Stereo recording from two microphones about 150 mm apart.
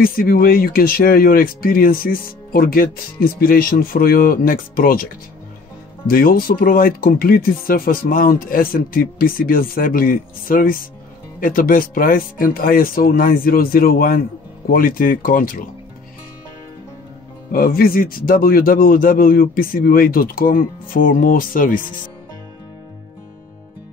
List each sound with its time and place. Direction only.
0.0 s speech: 75° left (ahead or behind)
6.0 s speech: 75° left (ahead or behind)
17.5 s speech: 75° left (ahead or behind)